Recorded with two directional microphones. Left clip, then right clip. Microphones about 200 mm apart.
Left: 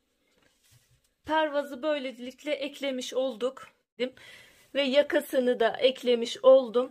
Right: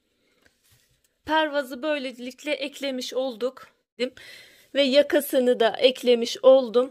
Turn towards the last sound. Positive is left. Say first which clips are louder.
# right 3 dB
turn(degrees=-30)  # may be behind; listen again after turning